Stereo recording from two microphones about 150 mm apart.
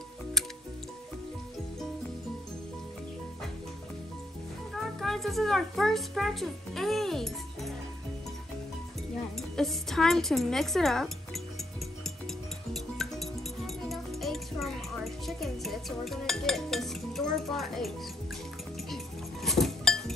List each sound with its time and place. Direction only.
5.0 s a child's voice: centre (ahead or behind)
9.6 s speech: centre (ahead or behind)
12.7 s music: centre (ahead or behind)
15.2 s speech: centre (ahead or behind)
19.4 s chink: centre (ahead or behind)